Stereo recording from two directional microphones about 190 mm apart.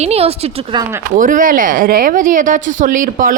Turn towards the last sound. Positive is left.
turn(degrees=-45)  # may be behind; listen again after turning